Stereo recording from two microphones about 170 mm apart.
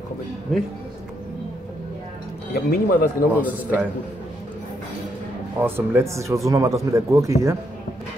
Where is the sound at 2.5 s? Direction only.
55° left (ahead or behind).